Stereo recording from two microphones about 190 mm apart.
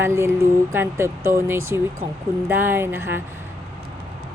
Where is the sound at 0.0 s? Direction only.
15° right (ahead or behind).